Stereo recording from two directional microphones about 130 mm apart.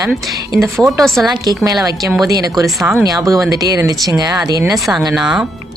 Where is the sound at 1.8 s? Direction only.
25° right (ahead or behind).